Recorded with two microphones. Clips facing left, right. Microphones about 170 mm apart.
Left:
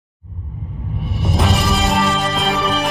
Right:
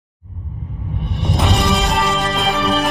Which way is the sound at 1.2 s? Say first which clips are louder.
Even; centre (ahead or behind).